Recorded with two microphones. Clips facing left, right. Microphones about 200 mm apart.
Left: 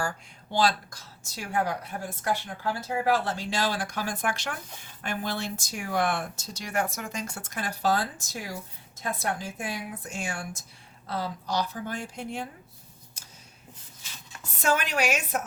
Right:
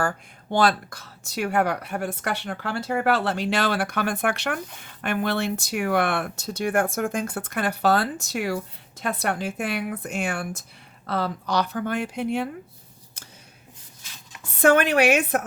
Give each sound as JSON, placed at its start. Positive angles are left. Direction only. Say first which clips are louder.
{"t": 0.0, "sound": "a woman's voice", "louder": "right 6 dB", "side_deg": -55}
{"t": 14.6, "sound": "speech", "louder": "right 9 dB", "side_deg": -60}